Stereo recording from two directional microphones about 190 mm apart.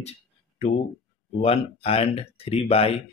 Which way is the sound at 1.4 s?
30° left (ahead or behind).